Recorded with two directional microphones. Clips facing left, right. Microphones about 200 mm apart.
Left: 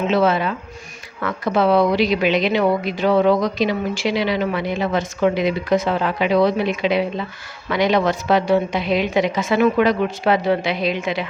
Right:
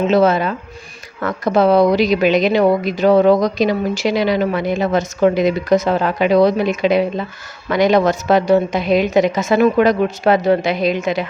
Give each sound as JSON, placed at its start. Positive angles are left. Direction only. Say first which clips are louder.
{"t": 0.1, "sound": "a woman's voice", "louder": "right 2 dB", "side_deg": -40}